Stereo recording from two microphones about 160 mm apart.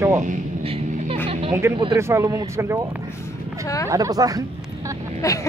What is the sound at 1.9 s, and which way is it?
Speech, 15° right (ahead or behind).